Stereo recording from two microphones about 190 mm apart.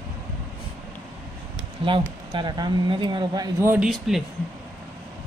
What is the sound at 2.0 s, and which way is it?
Speech, 25° right (ahead or behind).